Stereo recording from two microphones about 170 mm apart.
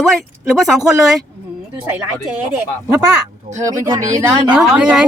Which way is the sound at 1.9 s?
10° right (ahead or behind).